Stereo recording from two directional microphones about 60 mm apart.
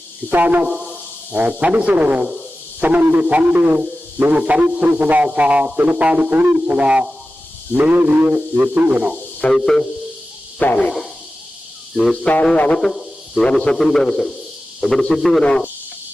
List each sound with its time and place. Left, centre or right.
0.3 s speech: right
0.7 s hiss: centre
1.4 s a man's voice: right
7.8 s a man's voice: right
9.5 s a man's voice: centre
10.6 s a sound: left
12.1 s a sound: centre
13.4 s a man's voice: centre
13.8 s a man's voice: centre
15.4 s a man's voice: centre